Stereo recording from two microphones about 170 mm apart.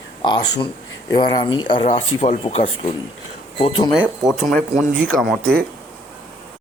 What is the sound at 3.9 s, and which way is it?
Speech, centre (ahead or behind).